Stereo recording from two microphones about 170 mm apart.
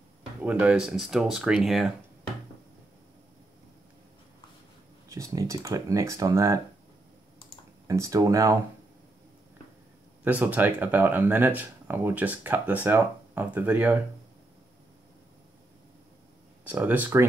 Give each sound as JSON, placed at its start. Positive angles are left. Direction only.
{"t": 0.4, "sound": "speech", "side_deg": -5}
{"t": 5.1, "sound": "speech", "side_deg": -20}
{"t": 7.8, "sound": "speech", "side_deg": -20}
{"t": 10.2, "sound": "speech", "side_deg": -10}
{"t": 16.6, "sound": "speech", "side_deg": -10}